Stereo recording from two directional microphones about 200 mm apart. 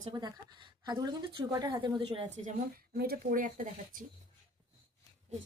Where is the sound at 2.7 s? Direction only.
50° right (ahead or behind).